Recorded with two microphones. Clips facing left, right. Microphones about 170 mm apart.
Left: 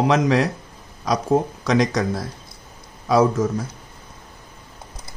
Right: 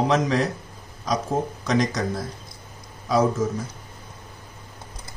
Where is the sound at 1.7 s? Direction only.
65° left (ahead or behind).